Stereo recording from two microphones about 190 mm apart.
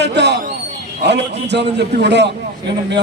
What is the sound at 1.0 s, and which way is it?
A man's voice, 65° right (ahead or behind).